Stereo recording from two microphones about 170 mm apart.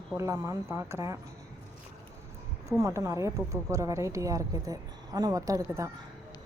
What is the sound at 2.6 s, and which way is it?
A woman's voice, 20° right (ahead or behind).